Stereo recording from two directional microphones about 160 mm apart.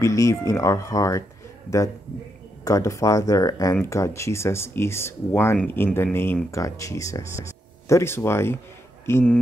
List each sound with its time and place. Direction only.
0.0 s speech: 20° left (ahead or behind)
2.6 s speech: 20° left (ahead or behind)